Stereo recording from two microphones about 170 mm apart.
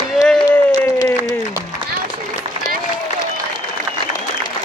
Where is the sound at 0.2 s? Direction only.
5° left (ahead or behind).